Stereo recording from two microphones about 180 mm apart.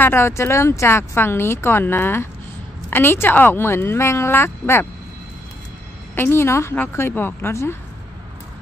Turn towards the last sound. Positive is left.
turn(degrees=15)  # may be behind; listen again after turning